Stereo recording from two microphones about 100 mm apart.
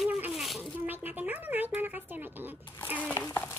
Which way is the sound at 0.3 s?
Centre (ahead or behind).